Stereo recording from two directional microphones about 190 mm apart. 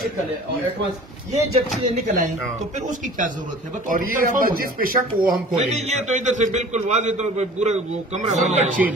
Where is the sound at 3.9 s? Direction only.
45° right (ahead or behind).